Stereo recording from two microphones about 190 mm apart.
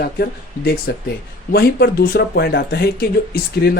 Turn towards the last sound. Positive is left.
turn(degrees=55)  # may be behind; listen again after turning